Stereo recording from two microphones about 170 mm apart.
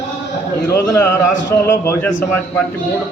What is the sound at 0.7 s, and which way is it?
A man's voice, 15° left (ahead or behind).